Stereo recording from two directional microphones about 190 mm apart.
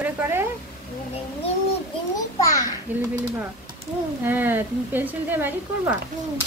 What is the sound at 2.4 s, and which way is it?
Speech, 15° left (ahead or behind).